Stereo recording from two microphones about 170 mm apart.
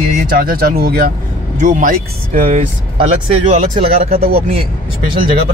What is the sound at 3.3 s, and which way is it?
Speech, 35° right (ahead or behind).